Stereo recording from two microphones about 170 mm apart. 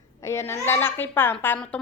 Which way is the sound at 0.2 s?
15° left (ahead or behind).